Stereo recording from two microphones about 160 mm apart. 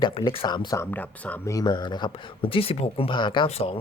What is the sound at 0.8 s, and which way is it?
Speech, 10° left (ahead or behind).